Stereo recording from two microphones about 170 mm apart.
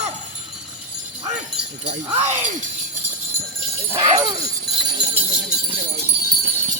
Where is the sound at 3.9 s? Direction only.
35° right (ahead or behind).